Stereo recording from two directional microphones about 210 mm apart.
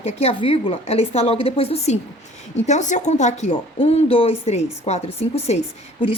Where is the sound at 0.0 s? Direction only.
30° left (ahead or behind).